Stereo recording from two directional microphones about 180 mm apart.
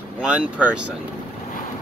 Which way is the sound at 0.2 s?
5° right (ahead or behind).